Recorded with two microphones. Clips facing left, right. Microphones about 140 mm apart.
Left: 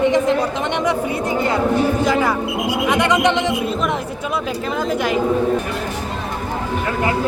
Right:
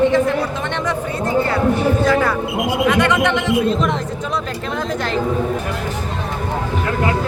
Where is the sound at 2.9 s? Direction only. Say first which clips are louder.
Left 2 dB; 15° left (ahead or behind).